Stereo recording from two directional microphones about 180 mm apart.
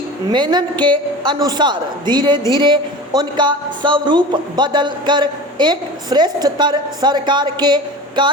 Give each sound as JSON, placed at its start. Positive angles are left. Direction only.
{"t": 0.3, "sound": "a woman's voice", "side_deg": -25}